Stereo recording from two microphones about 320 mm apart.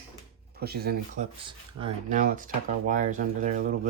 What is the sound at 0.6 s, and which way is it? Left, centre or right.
Speech, right.